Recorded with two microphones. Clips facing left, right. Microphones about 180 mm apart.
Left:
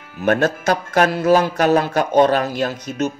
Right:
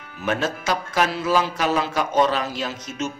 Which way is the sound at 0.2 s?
60° left (ahead or behind).